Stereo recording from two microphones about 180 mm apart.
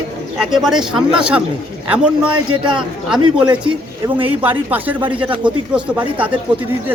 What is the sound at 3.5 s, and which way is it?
Speech, 25° right (ahead or behind).